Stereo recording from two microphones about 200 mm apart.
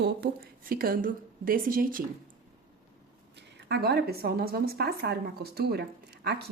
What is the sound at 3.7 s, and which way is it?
Speech, 55° right (ahead or behind).